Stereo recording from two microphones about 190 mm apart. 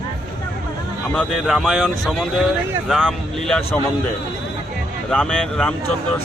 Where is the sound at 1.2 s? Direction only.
Centre (ahead or behind).